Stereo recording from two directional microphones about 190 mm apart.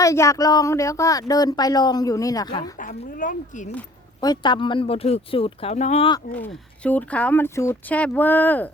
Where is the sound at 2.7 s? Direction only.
45° left (ahead or behind).